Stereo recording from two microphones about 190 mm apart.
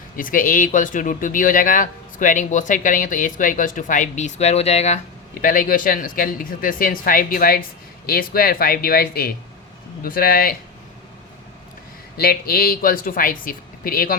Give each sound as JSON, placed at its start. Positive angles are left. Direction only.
{"t": 0.2, "sound": "speech", "side_deg": 45}
{"t": 12.1, "sound": "speech", "side_deg": 55}